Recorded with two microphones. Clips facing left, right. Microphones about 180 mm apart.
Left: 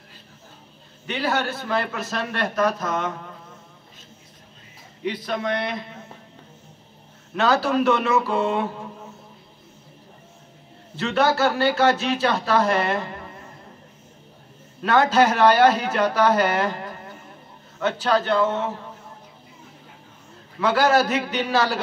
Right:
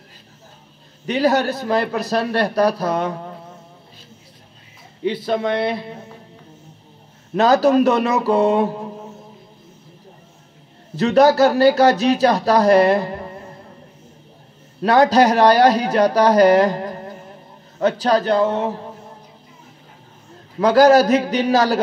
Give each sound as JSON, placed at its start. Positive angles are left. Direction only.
{"t": 1.0, "sound": "speech", "side_deg": -40}
{"t": 5.0, "sound": "a man's voice", "side_deg": -30}
{"t": 7.3, "sound": "speech", "side_deg": -40}
{"t": 11.0, "sound": "speech", "side_deg": -40}
{"t": 14.8, "sound": "speech", "side_deg": -35}
{"t": 20.5, "sound": "speech", "side_deg": -40}